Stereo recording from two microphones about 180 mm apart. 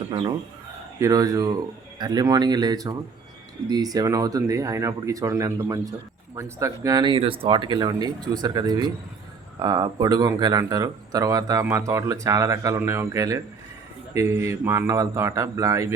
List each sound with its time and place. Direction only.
0.9 s a man's voice: 20° right (ahead or behind)